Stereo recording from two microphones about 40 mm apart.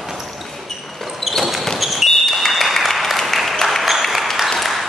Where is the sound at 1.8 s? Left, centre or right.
Centre.